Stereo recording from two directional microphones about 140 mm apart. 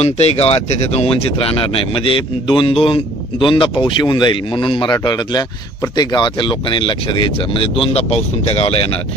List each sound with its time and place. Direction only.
0.0 s speech: 50° left (ahead or behind)